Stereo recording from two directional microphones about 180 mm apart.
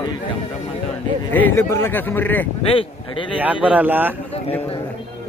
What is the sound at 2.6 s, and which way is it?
Speech, 30° left (ahead or behind).